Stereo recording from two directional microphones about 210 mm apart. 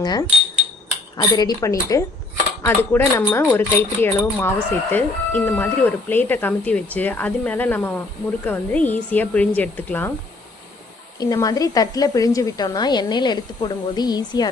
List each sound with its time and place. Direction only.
0.0 s a woman's voice: 20° left (ahead or behind)
11.2 s a woman's voice: 15° left (ahead or behind)